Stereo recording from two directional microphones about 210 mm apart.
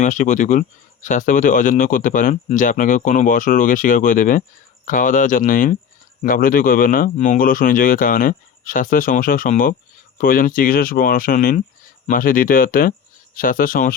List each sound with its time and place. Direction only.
0.0 s speech: 35° left (ahead or behind)